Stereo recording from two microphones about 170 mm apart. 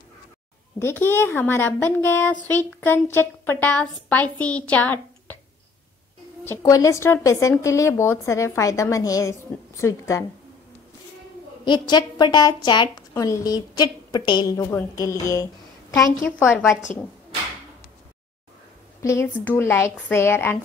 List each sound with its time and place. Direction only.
0.7 s speech: 15° left (ahead or behind)
6.4 s speech: 15° left (ahead or behind)
11.6 s a woman's voice: 25° left (ahead or behind); by 17.0 s 5° left (ahead or behind)
18.9 s speech: 15° left (ahead or behind)